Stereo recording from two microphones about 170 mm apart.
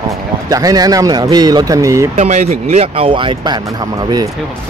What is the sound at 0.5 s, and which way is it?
Speech, 20° right (ahead or behind).